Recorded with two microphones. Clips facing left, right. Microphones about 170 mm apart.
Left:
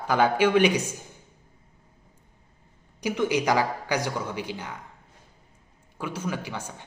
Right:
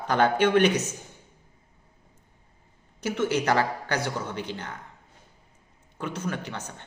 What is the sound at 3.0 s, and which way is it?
A man's voice, 15° left (ahead or behind).